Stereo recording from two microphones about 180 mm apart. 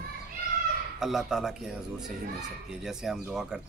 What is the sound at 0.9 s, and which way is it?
A man's voice, centre (ahead or behind).